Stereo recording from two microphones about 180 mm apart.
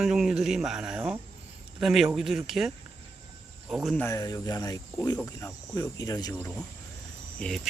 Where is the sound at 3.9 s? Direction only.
15° left (ahead or behind).